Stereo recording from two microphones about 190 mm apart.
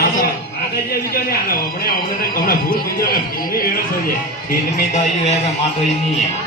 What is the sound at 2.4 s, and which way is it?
Speech, 50° left (ahead or behind).